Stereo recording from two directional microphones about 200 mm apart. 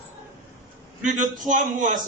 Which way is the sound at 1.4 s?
40° right (ahead or behind).